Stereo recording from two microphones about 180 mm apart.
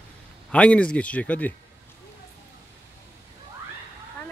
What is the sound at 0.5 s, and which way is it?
Speech, 5° left (ahead or behind).